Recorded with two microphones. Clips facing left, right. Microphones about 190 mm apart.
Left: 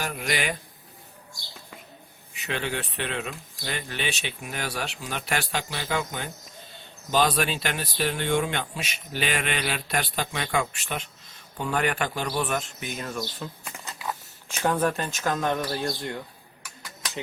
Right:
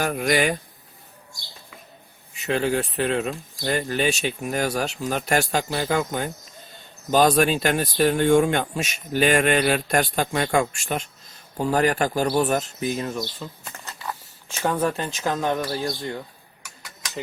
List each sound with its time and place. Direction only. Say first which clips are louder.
0.0 s speech: right 8 dB; 50° right (ahead or behind)
2.3 s speech: right 8 dB; 40° right (ahead or behind)
13.4 s a sound: even; 5° left (ahead or behind)
14.5 s speech: right 1 dB; 5° right (ahead or behind)